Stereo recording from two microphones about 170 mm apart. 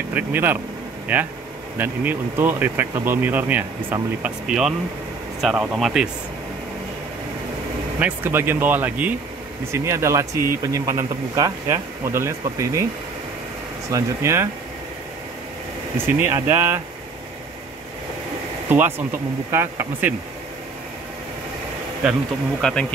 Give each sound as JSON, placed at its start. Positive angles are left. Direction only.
{"t": 0.1, "sound": "speech", "side_deg": -10}
{"t": 8.0, "sound": "speech", "side_deg": -10}
{"t": 13.8, "sound": "speech", "side_deg": -15}
{"t": 16.1, "sound": "speech", "side_deg": -15}
{"t": 18.7, "sound": "speech", "side_deg": -10}
{"t": 22.6, "sound": "speech", "side_deg": 5}